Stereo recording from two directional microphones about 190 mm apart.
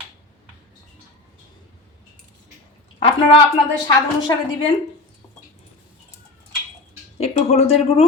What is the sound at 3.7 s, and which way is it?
Speech, 20° left (ahead or behind).